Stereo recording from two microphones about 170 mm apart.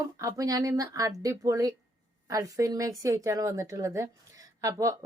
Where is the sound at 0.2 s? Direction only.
20° right (ahead or behind).